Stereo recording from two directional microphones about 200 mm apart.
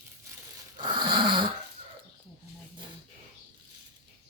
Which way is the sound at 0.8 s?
25° right (ahead or behind).